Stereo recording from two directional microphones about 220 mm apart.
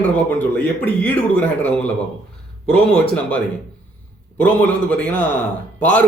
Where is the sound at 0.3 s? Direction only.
5° left (ahead or behind).